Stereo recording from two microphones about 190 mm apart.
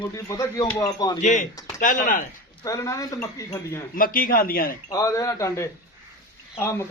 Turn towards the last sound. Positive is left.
turn(degrees=10)  # may be behind; listen again after turning